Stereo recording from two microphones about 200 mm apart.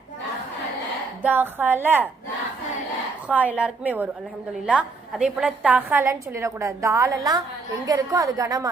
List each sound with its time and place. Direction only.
1.2 s a woman's voice: 10° right (ahead or behind)
3.2 s a woman's voice: 5° right (ahead or behind)